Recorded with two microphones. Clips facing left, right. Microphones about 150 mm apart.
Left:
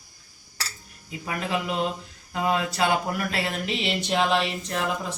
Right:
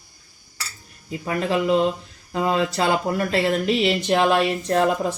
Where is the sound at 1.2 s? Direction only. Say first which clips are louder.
Right 6 dB; 40° right (ahead or behind).